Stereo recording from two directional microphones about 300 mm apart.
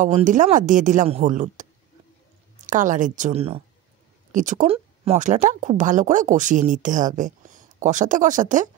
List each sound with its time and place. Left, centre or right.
0.0 s speech: right